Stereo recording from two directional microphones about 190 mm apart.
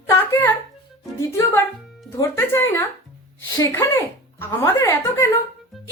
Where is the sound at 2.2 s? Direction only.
15° left (ahead or behind).